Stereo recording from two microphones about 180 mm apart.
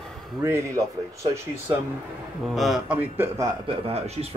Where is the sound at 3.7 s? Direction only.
35° right (ahead or behind).